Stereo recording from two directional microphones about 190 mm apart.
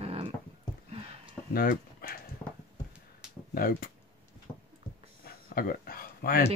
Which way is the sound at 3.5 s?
50° left (ahead or behind).